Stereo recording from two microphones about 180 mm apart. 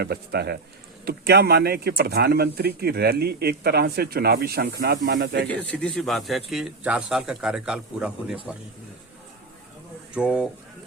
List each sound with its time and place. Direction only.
0.0 s speech: 60° right (ahead or behind)
5.5 s speech: 5° left (ahead or behind)
10.2 s speech: 5° right (ahead or behind)